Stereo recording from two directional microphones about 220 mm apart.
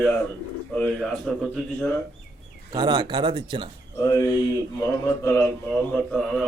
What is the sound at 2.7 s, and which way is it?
Speech, 20° right (ahead or behind).